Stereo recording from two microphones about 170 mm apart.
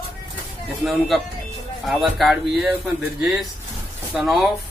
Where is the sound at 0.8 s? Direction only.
Centre (ahead or behind).